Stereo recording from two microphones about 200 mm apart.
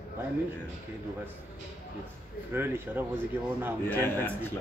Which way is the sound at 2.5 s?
10° right (ahead or behind).